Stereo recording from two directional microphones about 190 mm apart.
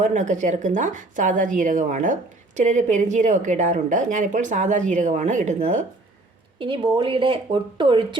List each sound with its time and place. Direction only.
0.0 s a woman's voice: 40° right (ahead or behind)
6.6 s a woman's voice: 25° right (ahead or behind)